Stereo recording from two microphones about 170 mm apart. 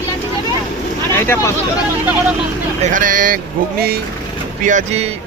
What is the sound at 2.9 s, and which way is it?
Speech, 50° right (ahead or behind).